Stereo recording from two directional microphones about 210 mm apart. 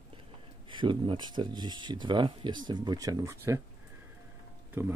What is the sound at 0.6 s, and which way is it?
Speech, 25° right (ahead or behind).